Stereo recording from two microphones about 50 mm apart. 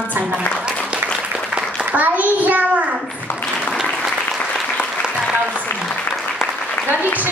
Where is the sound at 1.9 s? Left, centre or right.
Right.